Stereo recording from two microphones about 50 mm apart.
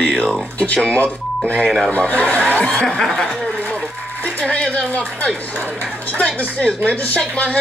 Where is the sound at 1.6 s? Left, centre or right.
Centre.